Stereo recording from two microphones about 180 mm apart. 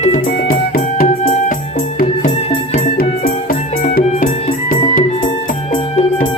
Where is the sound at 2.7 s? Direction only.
50° left (ahead or behind).